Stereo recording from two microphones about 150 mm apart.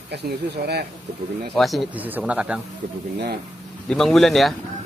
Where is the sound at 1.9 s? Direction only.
10° right (ahead or behind).